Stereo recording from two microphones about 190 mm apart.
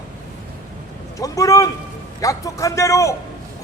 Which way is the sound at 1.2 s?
15° left (ahead or behind).